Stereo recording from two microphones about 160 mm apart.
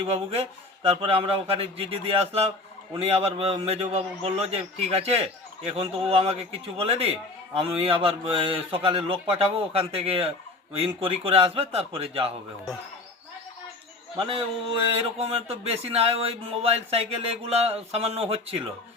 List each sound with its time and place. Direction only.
0.0 s speech: 35° right (ahead or behind)
14.2 s speech: 35° right (ahead or behind)